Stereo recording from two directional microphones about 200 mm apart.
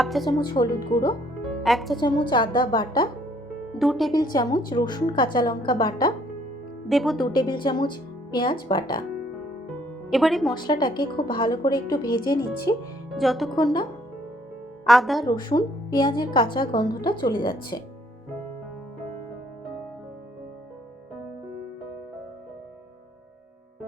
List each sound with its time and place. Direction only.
0.0 s speech: centre (ahead or behind)
0.3 s a woman's voice: 20° left (ahead or behind)
1.6 s speech: centre (ahead or behind)
2.0 s a woman's voice: 20° left (ahead or behind)
3.8 s speech: centre (ahead or behind)
4.1 s a woman's voice: 20° left (ahead or behind)
6.8 s speech: centre (ahead or behind)
7.3 s a woman's voice: 20° left (ahead or behind)
10.1 s speech: centre (ahead or behind)
10.5 s a woman's voice: 20° left (ahead or behind)
13.1 s speech: centre (ahead or behind)
14.8 s speech: centre (ahead or behind)
15.3 s a woman's voice: 20° left (ahead or behind)